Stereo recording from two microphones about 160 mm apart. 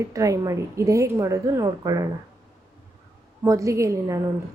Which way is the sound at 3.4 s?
20° right (ahead or behind).